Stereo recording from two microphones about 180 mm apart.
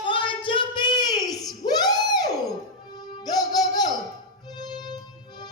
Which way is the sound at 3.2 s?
20° left (ahead or behind).